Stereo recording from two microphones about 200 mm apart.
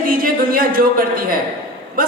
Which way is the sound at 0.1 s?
45° right (ahead or behind).